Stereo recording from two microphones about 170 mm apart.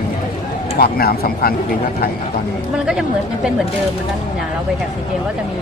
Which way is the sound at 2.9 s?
5° right (ahead or behind).